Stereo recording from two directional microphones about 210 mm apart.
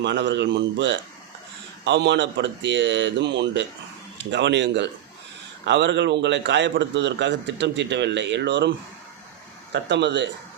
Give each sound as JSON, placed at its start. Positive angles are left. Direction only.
{"t": 0.0, "sound": "a man's voice", "side_deg": -55}
{"t": 9.7, "sound": "a man's voice", "side_deg": -55}